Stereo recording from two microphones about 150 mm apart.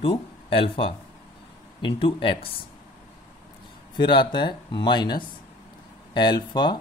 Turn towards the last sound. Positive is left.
turn(degrees=30)  # may be behind; listen again after turning